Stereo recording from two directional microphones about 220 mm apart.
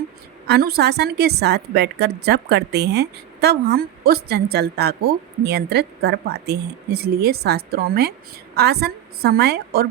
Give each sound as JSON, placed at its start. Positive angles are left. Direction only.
{"t": 0.4, "sound": "a woman's voice", "side_deg": -45}